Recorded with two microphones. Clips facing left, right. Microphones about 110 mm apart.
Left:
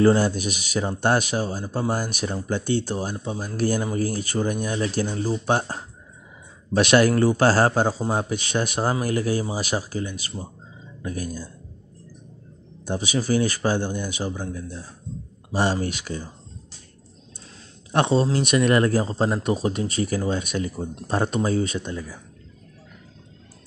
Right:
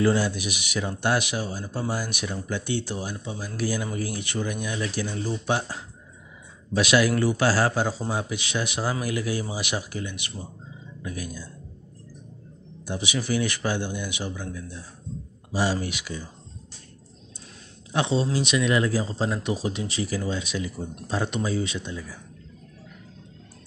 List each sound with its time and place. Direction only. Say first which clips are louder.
0.0 s speech: left 5 dB; 45° left (ahead or behind)
12.8 s speech: left 4 dB; 45° left (ahead or behind)
15.5 s speech: left 3 dB; 50° left (ahead or behind)
17.9 s speech: left 4 dB; 55° left (ahead or behind)